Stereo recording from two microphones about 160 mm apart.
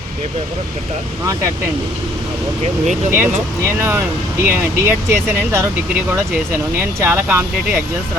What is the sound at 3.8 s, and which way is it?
Speech, 15° right (ahead or behind).